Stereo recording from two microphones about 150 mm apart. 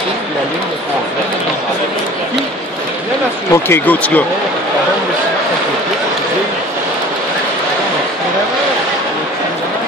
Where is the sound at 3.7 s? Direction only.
10° left (ahead or behind).